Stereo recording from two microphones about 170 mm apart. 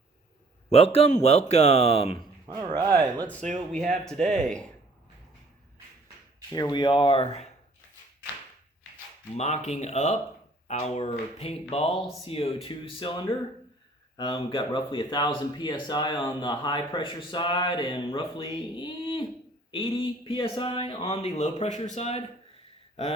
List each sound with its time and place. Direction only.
0.7 s a man's voice: 35° left (ahead or behind)
2.5 s speech: 20° right (ahead or behind)
3.7 s speech: 5° left (ahead or behind)
6.5 s speech: 25° left (ahead or behind)
9.4 s a man's voice: 40° left (ahead or behind)